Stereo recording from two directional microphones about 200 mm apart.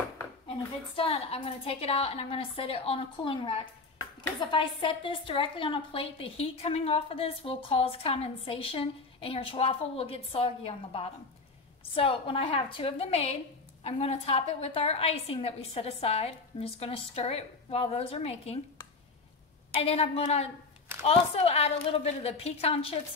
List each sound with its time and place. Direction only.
0.9 s a woman's voice: 30° left (ahead or behind)
19.7 s a woman's voice: 30° left (ahead or behind)